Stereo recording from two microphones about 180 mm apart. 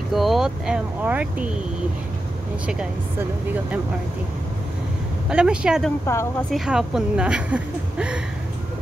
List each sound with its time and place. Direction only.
0.1 s a woman's voice: centre (ahead or behind)
5.3 s a woman's voice: 5° right (ahead or behind)
6.1 s speech: 15° left (ahead or behind)
6.5 s a woman's voice: centre (ahead or behind)